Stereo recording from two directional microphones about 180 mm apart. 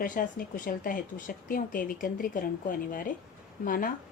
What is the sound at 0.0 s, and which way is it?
Speech, 50° left (ahead or behind).